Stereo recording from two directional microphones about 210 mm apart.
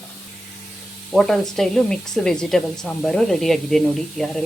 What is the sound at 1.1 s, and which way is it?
Speech, centre (ahead or behind).